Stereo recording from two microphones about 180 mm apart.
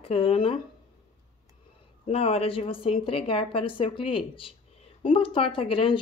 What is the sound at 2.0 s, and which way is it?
Speech, 35° left (ahead or behind).